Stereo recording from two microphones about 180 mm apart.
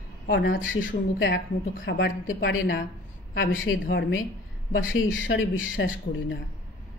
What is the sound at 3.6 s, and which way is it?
Speech, 90° left.